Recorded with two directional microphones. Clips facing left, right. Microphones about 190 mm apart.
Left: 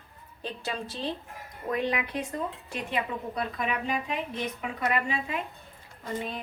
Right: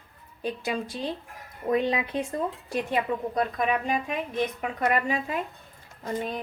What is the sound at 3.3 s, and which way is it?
Speech, 45° right (ahead or behind).